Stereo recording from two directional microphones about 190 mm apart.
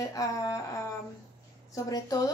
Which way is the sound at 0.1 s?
20° left (ahead or behind).